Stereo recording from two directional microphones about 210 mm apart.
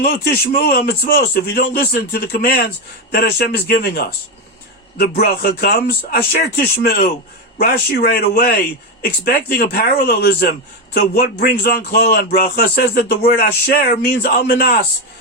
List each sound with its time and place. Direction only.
0.0 s speech: 45° left (ahead or behind)